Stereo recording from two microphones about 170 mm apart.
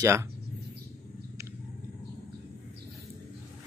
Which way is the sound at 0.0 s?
15° right (ahead or behind).